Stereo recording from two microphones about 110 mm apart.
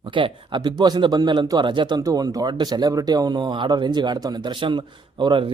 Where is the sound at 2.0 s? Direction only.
35° right (ahead or behind).